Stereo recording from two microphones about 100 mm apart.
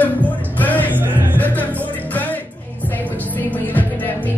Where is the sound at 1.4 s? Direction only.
15° left (ahead or behind).